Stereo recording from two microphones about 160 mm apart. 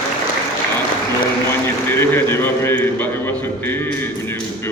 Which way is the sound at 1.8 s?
15° left (ahead or behind).